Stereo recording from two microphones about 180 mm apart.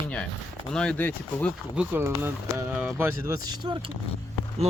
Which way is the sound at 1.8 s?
15° right (ahead or behind).